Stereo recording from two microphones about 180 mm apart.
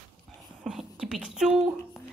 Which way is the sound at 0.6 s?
Centre (ahead or behind).